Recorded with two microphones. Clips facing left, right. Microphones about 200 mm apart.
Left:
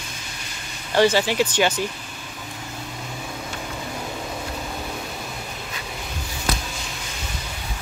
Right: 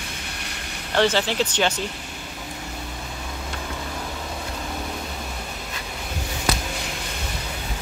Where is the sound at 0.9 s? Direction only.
10° left (ahead or behind).